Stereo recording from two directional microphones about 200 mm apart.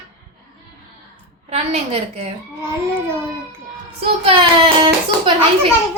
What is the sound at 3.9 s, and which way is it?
A child's voice, 25° right (ahead or behind).